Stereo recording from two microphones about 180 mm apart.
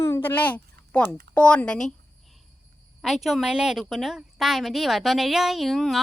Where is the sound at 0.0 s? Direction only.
15° left (ahead or behind).